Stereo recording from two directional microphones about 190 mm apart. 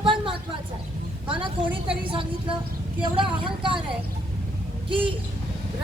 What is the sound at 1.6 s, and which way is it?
Speech, 5° right (ahead or behind).